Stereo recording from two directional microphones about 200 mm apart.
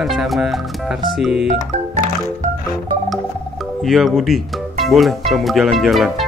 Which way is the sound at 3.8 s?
Centre (ahead or behind).